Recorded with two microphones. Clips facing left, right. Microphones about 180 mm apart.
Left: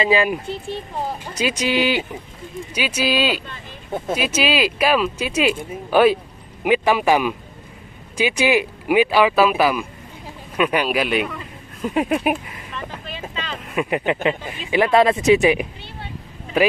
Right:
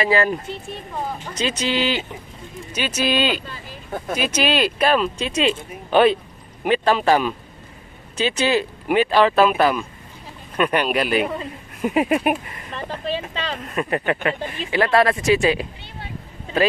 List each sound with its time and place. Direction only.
0.0 s speech: 15° left (ahead or behind)
12.7 s vehicle: 35° right (ahead or behind)
13.7 s speech: 10° left (ahead or behind)